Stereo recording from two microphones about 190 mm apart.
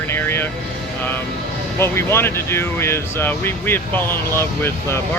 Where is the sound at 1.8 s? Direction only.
15° left (ahead or behind).